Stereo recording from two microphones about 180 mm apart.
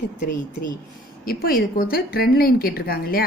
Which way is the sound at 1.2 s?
55° left (ahead or behind).